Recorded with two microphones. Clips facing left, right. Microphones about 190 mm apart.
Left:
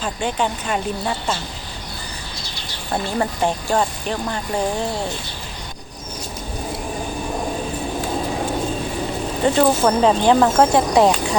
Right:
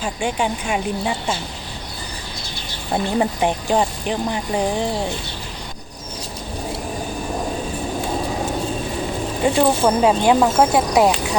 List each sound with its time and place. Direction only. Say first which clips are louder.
0.0 s speech: even; 10° right (ahead or behind)
2.9 s speech: right 2 dB; 15° right (ahead or behind)
9.4 s speech: left 1 dB; 10° right (ahead or behind)